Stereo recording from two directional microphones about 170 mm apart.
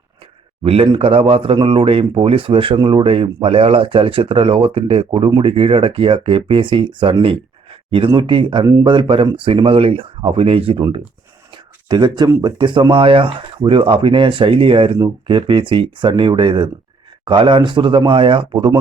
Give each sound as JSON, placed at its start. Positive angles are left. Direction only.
{"t": 0.6, "sound": "speech", "side_deg": -35}